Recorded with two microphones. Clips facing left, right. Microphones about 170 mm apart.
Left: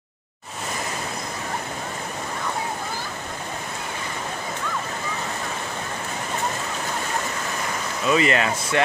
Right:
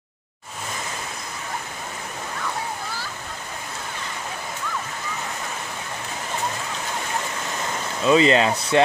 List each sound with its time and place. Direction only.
8.0 s speech: 25° right (ahead or behind)